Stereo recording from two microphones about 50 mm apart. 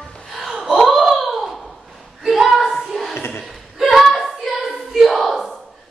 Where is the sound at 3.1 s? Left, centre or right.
Left.